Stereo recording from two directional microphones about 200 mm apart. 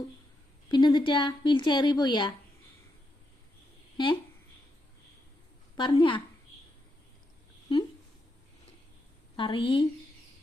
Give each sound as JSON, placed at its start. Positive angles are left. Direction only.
{"t": 0.7, "sound": "speech", "side_deg": 20}
{"t": 3.9, "sound": "speech", "side_deg": 20}
{"t": 5.7, "sound": "speech", "side_deg": 25}
{"t": 9.3, "sound": "a woman's voice", "side_deg": 25}